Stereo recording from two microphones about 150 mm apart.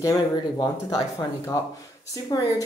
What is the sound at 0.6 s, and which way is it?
A woman's voice, 25° left (ahead or behind).